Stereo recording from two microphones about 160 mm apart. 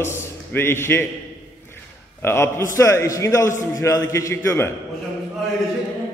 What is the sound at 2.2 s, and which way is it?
A man's voice, 15° left (ahead or behind).